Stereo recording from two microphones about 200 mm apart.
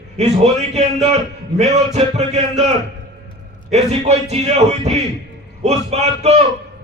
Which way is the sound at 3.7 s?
35° right (ahead or behind).